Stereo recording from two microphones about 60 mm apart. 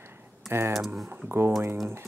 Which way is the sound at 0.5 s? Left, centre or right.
Right.